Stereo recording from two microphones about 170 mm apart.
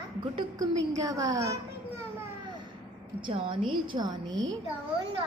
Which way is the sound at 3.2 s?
30° right (ahead or behind).